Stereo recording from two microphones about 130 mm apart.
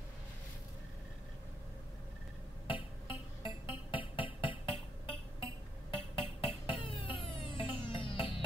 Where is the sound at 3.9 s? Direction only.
45° left (ahead or behind).